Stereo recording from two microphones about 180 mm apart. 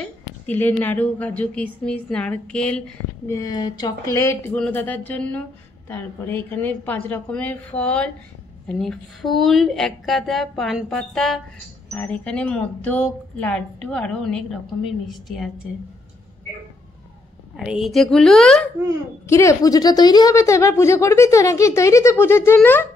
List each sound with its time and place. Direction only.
0.5 s a woman's voice: 10° left (ahead or behind)
3.3 s a woman's voice: 20° left (ahead or behind); by 15.5 s centre (ahead or behind)
17.6 s speech: centre (ahead or behind)
19.2 s a woman's voice: 15° left (ahead or behind)